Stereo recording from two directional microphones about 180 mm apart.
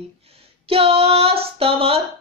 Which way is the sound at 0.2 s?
35° right (ahead or behind).